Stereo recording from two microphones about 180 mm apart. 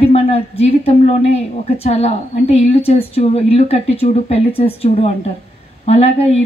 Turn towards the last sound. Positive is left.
turn(degrees=35)  # may be behind; listen again after turning